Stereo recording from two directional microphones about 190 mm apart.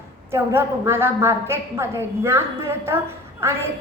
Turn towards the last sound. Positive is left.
turn(degrees=-10)  # may be behind; listen again after turning